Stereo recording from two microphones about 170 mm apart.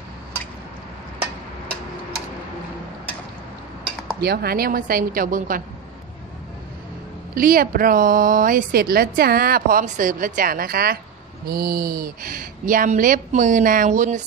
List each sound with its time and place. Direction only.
4.2 s speech: 65° right (ahead or behind)
7.3 s speech: 55° right (ahead or behind)